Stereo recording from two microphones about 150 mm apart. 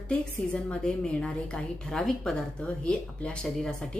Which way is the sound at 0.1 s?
5° left (ahead or behind).